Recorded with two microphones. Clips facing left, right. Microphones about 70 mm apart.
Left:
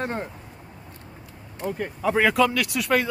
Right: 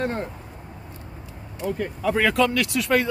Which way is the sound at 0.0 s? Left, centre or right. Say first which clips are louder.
Right 2 dB; centre.